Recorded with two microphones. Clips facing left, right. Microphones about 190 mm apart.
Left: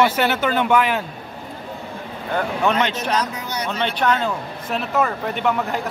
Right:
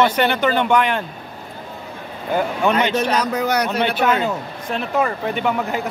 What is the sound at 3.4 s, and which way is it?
Speech, 85° right.